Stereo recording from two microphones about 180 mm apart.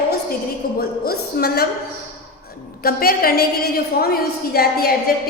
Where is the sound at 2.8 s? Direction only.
55° left (ahead or behind).